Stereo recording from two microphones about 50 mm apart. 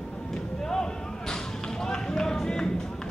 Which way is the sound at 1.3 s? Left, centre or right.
Centre.